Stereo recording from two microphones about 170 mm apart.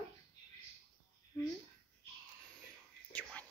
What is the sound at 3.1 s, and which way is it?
Whispering, 10° left (ahead or behind).